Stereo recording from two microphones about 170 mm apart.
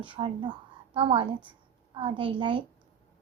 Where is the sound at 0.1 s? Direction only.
30° right (ahead or behind).